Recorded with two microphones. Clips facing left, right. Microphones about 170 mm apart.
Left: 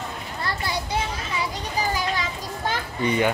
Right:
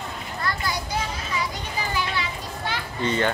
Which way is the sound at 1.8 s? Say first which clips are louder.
Left 3 dB; 40° left (ahead or behind).